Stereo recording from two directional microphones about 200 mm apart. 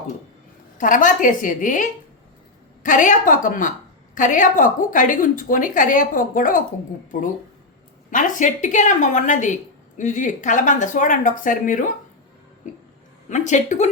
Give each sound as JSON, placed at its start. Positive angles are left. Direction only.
{"t": 0.8, "sound": "a woman's voice", "side_deg": 40}
{"t": 8.1, "sound": "a woman's voice", "side_deg": 40}
{"t": 13.3, "sound": "a woman's voice", "side_deg": 35}